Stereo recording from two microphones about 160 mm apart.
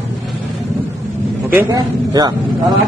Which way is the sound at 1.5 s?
25° right (ahead or behind).